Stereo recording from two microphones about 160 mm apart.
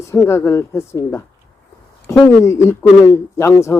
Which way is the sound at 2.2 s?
20° left (ahead or behind).